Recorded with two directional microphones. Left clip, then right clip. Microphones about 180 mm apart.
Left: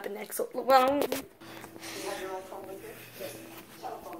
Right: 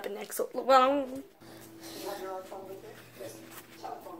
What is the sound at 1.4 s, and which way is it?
Music, 5° left (ahead or behind).